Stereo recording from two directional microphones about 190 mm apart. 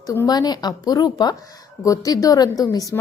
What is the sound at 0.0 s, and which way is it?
A woman's voice, 20° left (ahead or behind).